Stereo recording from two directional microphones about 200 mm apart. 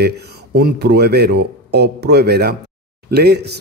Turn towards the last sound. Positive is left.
turn(degrees=-55)  # may be behind; listen again after turning